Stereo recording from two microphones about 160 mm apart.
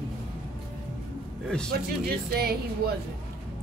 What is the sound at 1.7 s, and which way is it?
Speech, 75° right (ahead or behind).